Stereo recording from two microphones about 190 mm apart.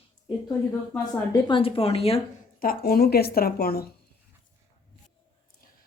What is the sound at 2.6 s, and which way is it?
Speech, 50° left (ahead or behind).